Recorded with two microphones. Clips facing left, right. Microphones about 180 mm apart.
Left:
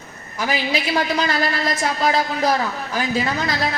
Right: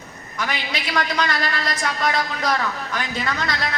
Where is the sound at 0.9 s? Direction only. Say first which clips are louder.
Even; 25° left (ahead or behind).